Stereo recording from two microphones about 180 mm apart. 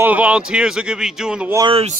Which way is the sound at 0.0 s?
10° right (ahead or behind).